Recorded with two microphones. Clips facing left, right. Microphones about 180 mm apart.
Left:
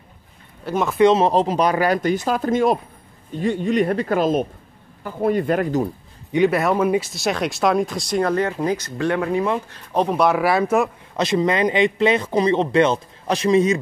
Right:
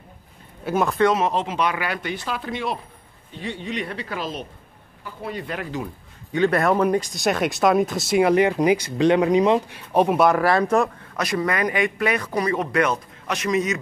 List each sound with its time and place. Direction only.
0.7 s speech: centre (ahead or behind)
0.9 s speech: 25° left (ahead or behind); by 5.9 s 45° left (ahead or behind)
6.5 s speech: centre (ahead or behind)
11.1 s speech: 25° left (ahead or behind)